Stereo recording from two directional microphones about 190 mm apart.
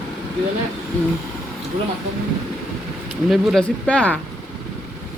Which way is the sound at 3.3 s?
Centre (ahead or behind).